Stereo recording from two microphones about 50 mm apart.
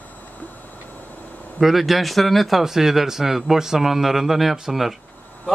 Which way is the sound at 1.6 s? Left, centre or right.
Centre.